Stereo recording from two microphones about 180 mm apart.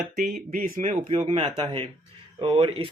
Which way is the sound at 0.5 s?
50° right (ahead or behind).